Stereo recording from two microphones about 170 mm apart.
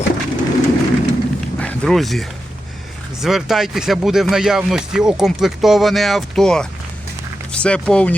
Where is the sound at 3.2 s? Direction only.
Centre (ahead or behind).